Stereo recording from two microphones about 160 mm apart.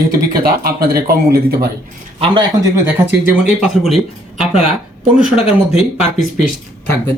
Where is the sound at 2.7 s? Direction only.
10° right (ahead or behind).